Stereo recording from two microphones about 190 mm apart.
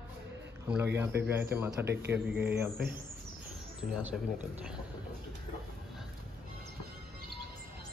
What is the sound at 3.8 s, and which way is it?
Speech, centre (ahead or behind).